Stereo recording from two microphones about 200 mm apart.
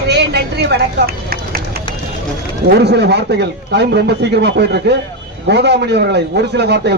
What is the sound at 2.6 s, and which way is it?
A woman's voice, 55° right (ahead or behind).